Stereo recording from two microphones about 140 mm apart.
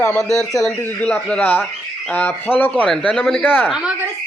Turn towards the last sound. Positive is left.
turn(degrees=10)  # may be behind; listen again after turning